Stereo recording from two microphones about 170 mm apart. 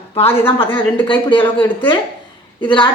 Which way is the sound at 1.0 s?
30° left (ahead or behind).